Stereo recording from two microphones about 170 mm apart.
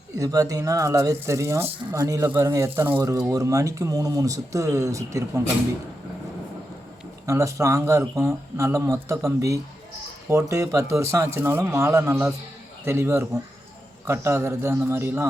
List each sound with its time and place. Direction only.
0.2 s speech: 20° right (ahead or behind)
7.3 s a man's voice: 20° right (ahead or behind)